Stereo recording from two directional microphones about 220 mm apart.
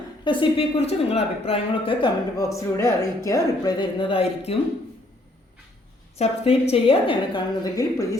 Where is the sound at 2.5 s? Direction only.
15° left (ahead or behind).